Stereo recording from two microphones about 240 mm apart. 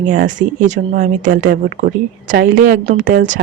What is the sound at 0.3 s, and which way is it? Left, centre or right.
Speech, right.